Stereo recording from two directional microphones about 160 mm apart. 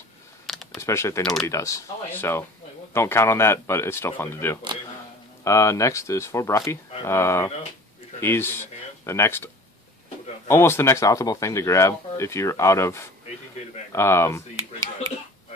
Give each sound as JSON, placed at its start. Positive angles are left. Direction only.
{"t": 0.5, "sound": "a sound", "side_deg": 0}
{"t": 0.7, "sound": "speech", "side_deg": 15}
{"t": 1.2, "sound": "speech", "side_deg": 5}
{"t": 1.5, "sound": "speech", "side_deg": 20}
{"t": 10.5, "sound": "speech", "side_deg": 15}